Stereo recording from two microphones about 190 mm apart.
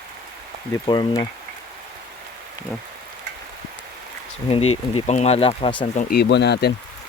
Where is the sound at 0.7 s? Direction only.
20° left (ahead or behind).